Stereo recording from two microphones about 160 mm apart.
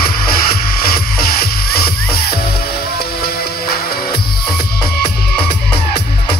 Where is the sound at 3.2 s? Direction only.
70° left (ahead or behind).